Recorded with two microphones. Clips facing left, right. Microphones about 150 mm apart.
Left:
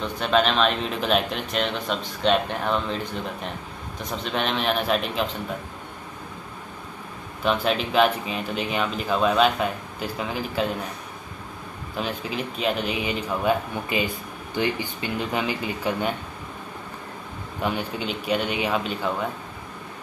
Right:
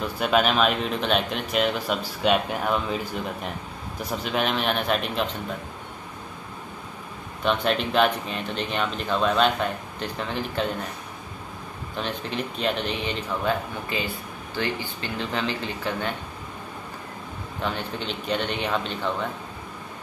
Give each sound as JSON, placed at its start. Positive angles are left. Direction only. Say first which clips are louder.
{"t": 0.0, "sound": "speech", "louder": "even", "side_deg": -5}
{"t": 4.0, "sound": "speech", "louder": "right 1 dB", "side_deg": -5}
{"t": 7.4, "sound": "speech", "louder": "even", "side_deg": 0}
{"t": 12.0, "sound": "speech", "louder": "left 1 dB", "side_deg": 5}
{"t": 17.6, "sound": "speech", "louder": "left 3 dB", "side_deg": 10}